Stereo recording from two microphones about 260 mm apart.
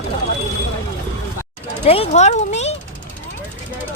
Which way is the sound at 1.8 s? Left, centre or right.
Left.